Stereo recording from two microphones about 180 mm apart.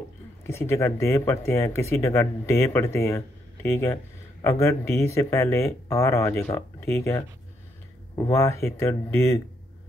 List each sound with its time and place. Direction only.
0.5 s speech: 15° left (ahead or behind)